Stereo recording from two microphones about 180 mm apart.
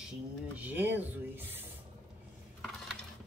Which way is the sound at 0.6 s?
10° right (ahead or behind).